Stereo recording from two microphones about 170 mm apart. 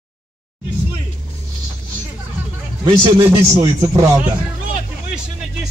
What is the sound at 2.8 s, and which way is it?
Speech, 20° right (ahead or behind).